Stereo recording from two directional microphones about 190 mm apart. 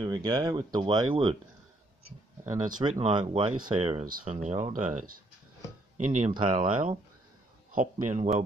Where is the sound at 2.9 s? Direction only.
30° right (ahead or behind).